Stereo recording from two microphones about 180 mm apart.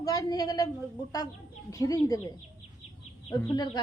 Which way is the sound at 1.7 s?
20° left (ahead or behind).